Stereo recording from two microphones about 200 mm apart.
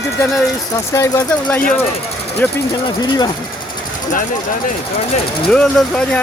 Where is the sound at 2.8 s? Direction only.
20° left (ahead or behind).